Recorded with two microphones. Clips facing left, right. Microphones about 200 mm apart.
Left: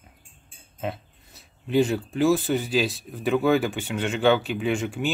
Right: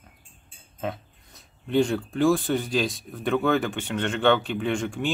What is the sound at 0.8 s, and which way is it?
Speech, 5° left (ahead or behind).